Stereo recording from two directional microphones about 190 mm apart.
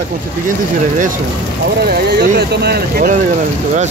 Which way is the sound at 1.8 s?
55° right (ahead or behind).